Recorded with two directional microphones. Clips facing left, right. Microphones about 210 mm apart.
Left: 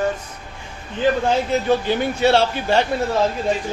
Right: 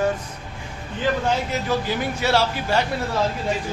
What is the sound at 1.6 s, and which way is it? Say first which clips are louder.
A man's voice: left 5 dB; 25° left (ahead or behind).